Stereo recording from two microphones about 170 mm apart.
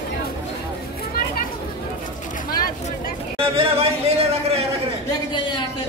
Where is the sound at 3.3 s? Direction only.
35° right (ahead or behind).